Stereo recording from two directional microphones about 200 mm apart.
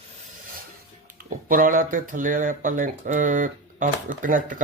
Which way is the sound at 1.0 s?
45° right (ahead or behind).